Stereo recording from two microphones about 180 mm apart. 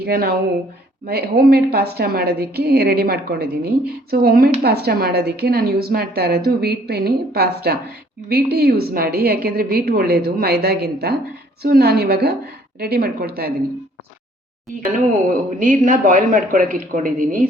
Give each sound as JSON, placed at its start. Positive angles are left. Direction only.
{"t": 0.0, "sound": "a woman's voice", "side_deg": -60}
{"t": 15.4, "sound": "a man's voice", "side_deg": -50}